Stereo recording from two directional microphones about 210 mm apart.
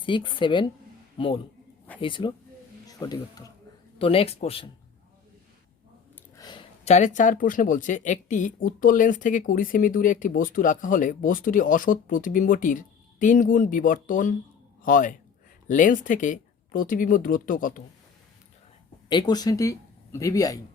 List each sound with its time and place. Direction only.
0.0 s speech: 25° left (ahead or behind)
6.3 s speech: 20° left (ahead or behind); by 17.8 s 40° left (ahead or behind)
19.0 s a man's voice: 20° left (ahead or behind)